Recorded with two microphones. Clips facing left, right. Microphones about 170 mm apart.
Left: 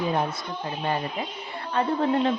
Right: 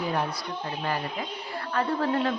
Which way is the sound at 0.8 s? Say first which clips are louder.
Left 3 dB; 25° left (ahead or behind).